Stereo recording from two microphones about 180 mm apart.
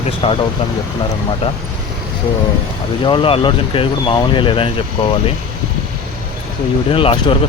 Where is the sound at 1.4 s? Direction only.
30° left (ahead or behind).